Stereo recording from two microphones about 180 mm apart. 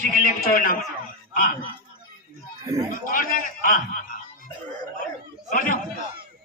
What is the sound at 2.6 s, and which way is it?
Speech, 20° right (ahead or behind).